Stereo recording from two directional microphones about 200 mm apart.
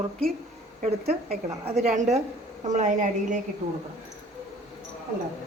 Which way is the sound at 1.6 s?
35° right (ahead or behind).